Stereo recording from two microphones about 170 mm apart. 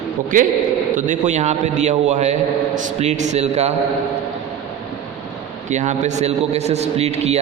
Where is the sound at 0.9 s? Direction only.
50° right (ahead or behind).